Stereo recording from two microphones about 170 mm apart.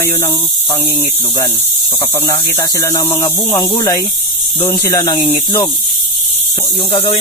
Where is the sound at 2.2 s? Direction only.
25° left (ahead or behind).